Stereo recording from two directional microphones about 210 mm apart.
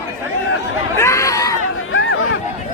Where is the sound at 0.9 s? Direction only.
15° left (ahead or behind).